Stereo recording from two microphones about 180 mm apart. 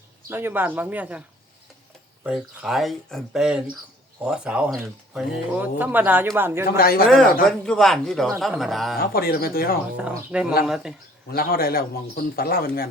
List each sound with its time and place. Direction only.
0.3 s speech: 10° right (ahead or behind)
2.2 s speech: 5° right (ahead or behind)
6.7 s a man's voice: 55° left (ahead or behind)
7.4 s speech: 5° left (ahead or behind)
9.0 s a man's voice: 55° left (ahead or behind)
10.3 s speech: 5° right (ahead or behind)
11.3 s a man's voice: 55° left (ahead or behind)